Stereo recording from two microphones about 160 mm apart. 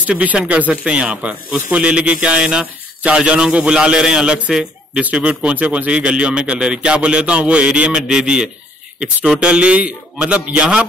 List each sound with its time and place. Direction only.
0.0 s speech: 5° right (ahead or behind)